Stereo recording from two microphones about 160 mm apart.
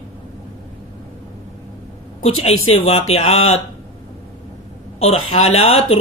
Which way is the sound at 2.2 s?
40° left (ahead or behind).